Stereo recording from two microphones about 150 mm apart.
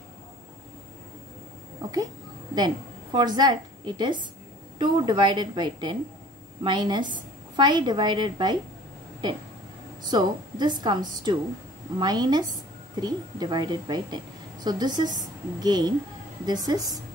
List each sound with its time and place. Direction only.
1.8 s a child's voice: 25° right (ahead or behind)
10.0 s a woman's voice: 30° right (ahead or behind)